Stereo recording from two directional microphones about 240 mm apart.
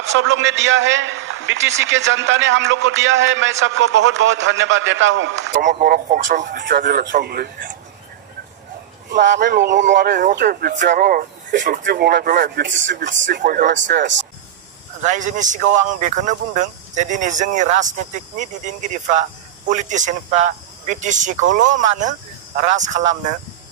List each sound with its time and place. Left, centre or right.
0.1 s a man's voice: right
5.6 s speech: right
9.1 s a man's voice: right
9.4 s speech: right
12.9 s a man's voice: right
15.0 s speech: right